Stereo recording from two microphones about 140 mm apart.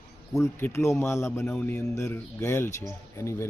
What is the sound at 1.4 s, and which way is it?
A man's voice, 10° left (ahead or behind).